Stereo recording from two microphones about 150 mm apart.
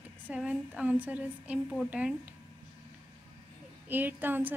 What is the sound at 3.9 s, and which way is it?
Speech, 10° right (ahead or behind).